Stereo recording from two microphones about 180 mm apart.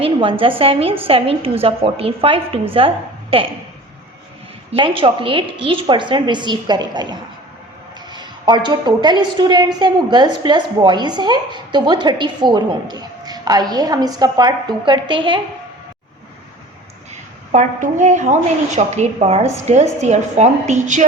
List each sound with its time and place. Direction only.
0.0 s a woman's voice: 30° right (ahead or behind)
4.7 s a woman's voice: 30° right (ahead or behind)
17.5 s a woman's voice: 40° right (ahead or behind)